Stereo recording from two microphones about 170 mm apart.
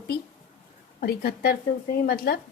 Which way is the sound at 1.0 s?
65° left (ahead or behind).